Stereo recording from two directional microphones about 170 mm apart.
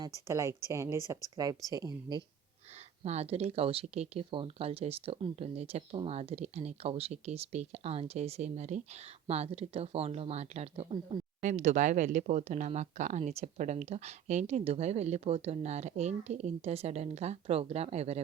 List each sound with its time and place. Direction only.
0.3 s a woman's voice: 15° right (ahead or behind)
3.0 s speech: 40° right (ahead or behind)